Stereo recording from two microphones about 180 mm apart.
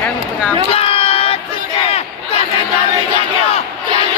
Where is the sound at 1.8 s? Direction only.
35° left (ahead or behind).